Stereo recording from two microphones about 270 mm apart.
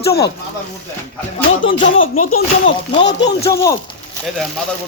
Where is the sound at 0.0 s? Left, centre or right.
Left.